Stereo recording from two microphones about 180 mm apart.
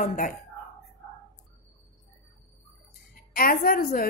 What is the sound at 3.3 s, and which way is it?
Speech, 55° left (ahead or behind).